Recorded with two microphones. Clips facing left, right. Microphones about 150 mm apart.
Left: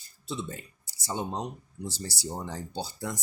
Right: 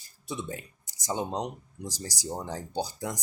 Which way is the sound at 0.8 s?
15° right (ahead or behind).